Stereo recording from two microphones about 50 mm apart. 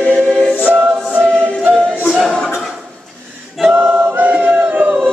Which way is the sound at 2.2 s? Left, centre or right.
Centre.